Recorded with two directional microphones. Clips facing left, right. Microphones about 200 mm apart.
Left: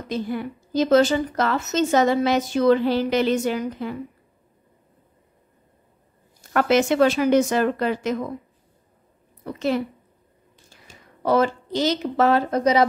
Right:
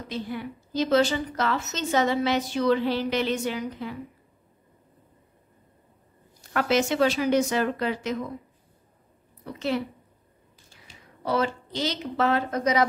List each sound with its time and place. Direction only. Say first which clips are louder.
0.1 s a woman's voice: left 6 dB; 45° left (ahead or behind)
6.5 s a woman's voice: left 5 dB; 50° left (ahead or behind)
9.5 s a woman's voice: left 4 dB; 45° left (ahead or behind)
10.9 s a woman's voice: left 7 dB; 45° left (ahead or behind)